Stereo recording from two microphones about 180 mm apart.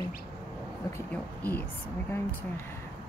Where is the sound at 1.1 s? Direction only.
10° left (ahead or behind).